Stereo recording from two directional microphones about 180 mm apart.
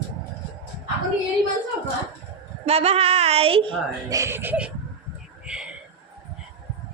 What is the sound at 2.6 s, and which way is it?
Speech, 35° right (ahead or behind).